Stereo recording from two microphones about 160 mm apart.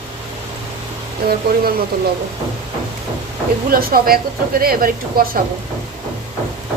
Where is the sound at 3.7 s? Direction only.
65° right (ahead or behind).